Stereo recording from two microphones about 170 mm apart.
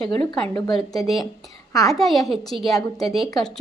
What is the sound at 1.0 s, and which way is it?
A woman's voice, centre (ahead or behind).